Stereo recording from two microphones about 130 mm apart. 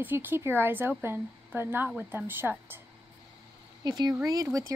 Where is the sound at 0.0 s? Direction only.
15° right (ahead or behind).